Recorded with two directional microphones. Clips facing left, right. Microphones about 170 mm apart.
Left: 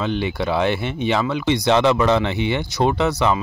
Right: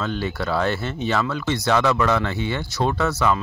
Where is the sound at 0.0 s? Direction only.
15° left (ahead or behind).